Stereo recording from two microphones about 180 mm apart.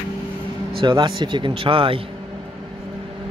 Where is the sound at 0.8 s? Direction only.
25° right (ahead or behind).